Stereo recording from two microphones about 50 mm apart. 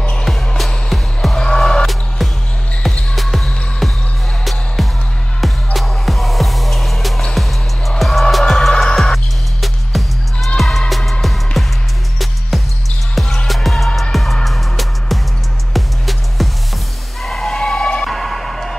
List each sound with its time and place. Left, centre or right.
0.2 s music: centre
2.8 s basketball bounce: centre
4.8 s music: centre
17.2 s a sound: centre
18.0 s music: centre